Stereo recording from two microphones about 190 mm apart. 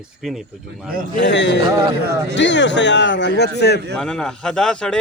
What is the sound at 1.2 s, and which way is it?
A man's voice, 70° left (ahead or behind).